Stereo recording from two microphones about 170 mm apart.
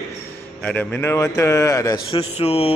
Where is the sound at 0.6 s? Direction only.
10° left (ahead or behind).